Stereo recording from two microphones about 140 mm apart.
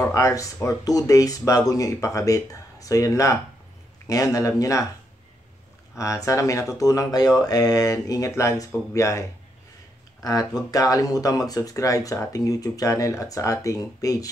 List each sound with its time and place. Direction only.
0.0 s speech: 20° left (ahead or behind)
5.9 s speech: 20° left (ahead or behind)
10.2 s speech: 25° left (ahead or behind)